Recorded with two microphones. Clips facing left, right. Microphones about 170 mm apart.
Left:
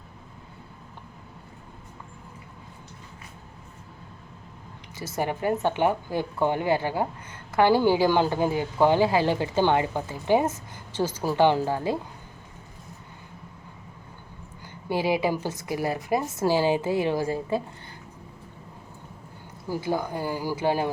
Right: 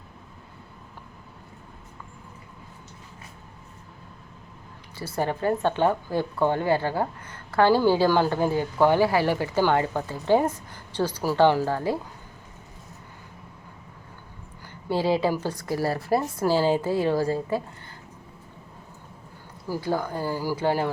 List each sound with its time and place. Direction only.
5.1 s speech: 15° left (ahead or behind)
14.8 s speech: 15° left (ahead or behind)
19.6 s speech: 20° left (ahead or behind)